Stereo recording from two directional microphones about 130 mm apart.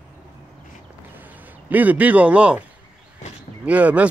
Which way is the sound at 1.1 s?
15° right (ahead or behind).